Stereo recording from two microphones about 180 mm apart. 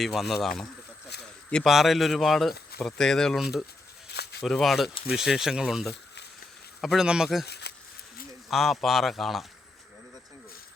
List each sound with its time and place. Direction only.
0.0 s speech: centre (ahead or behind)
4.1 s a sound: 65° left (ahead or behind)
4.4 s speech: centre (ahead or behind)
7.4 s speech: 65° left (ahead or behind)
8.4 s speech: centre (ahead or behind)